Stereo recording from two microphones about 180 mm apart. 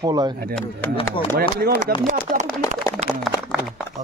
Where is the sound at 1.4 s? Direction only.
60° right (ahead or behind).